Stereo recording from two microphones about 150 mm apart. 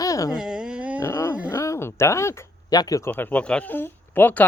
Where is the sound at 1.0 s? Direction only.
20° left (ahead or behind).